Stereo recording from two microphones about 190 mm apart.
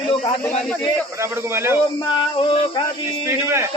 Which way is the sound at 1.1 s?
15° right (ahead or behind).